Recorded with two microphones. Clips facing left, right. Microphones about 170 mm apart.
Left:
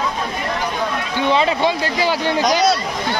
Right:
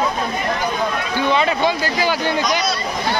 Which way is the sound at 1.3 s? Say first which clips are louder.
Left 1 dB; 30° left (ahead or behind).